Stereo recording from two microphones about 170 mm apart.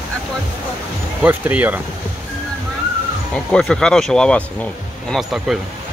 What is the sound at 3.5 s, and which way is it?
Speech, 5° left (ahead or behind).